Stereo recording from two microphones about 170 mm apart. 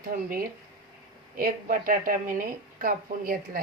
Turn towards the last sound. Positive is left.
turn(degrees=-55)  # may be behind; listen again after turning